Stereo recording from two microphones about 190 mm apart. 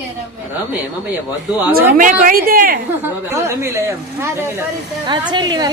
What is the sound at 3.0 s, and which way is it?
A woman's voice, 15° right (ahead or behind).